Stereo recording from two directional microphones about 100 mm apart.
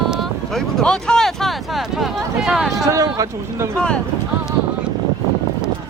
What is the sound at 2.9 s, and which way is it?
Speech, 35° right (ahead or behind).